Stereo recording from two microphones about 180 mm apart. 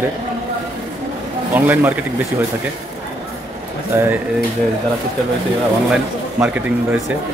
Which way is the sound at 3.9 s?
15° right (ahead or behind).